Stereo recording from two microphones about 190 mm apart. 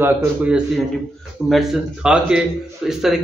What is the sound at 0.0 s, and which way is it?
Speech, 10° right (ahead or behind).